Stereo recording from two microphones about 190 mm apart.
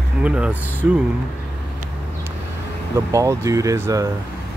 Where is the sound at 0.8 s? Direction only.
10° right (ahead or behind).